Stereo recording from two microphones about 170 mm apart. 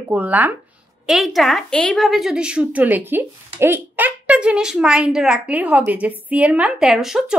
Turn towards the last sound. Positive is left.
turn(degrees=-5)  # may be behind; listen again after turning